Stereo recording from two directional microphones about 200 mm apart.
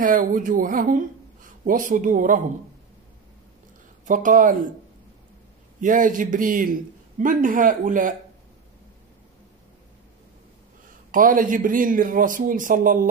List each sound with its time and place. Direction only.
0.0 s speech: 45° right (ahead or behind)
4.1 s a man's voice: 40° right (ahead or behind)
5.8 s a man's voice: 40° right (ahead or behind)
11.1 s a man's voice: 45° right (ahead or behind)